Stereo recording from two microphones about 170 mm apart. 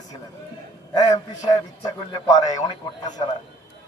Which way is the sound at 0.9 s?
20° left (ahead or behind).